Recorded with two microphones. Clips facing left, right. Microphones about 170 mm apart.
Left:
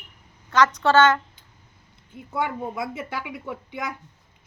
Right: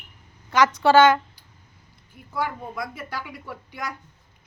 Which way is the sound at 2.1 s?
25° left (ahead or behind).